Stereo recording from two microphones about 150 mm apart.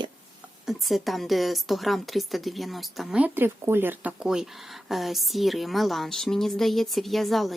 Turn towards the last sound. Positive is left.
turn(degrees=0)  # may be behind; listen again after turning